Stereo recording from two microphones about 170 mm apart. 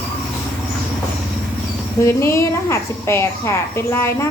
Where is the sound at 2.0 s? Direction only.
15° left (ahead or behind).